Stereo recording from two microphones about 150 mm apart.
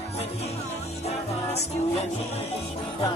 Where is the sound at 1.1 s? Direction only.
45° left (ahead or behind).